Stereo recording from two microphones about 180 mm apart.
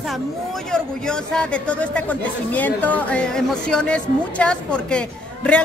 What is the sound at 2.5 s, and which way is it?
A woman's voice, 10° left (ahead or behind).